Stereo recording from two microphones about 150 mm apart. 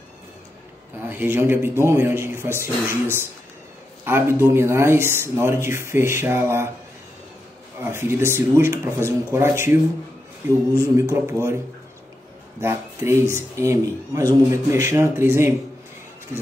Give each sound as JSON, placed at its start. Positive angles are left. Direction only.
{"t": 0.9, "sound": "speech", "side_deg": -15}
{"t": 7.8, "sound": "speech", "side_deg": -15}
{"t": 10.8, "sound": "speech", "side_deg": -20}